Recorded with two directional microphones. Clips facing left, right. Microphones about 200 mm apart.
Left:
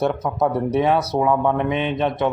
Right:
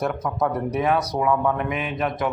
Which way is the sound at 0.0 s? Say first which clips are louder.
Left 4 dB; 30° left (ahead or behind).